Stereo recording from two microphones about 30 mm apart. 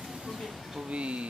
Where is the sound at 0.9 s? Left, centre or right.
Right.